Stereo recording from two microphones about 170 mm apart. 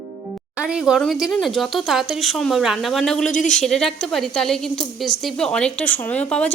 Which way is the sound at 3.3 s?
45° left (ahead or behind).